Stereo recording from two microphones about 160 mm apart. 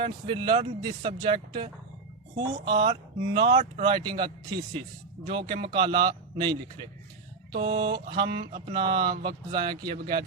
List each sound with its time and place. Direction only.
0.0 s a man's voice: 30° right (ahead or behind)
7.6 s a man's voice: 30° right (ahead or behind)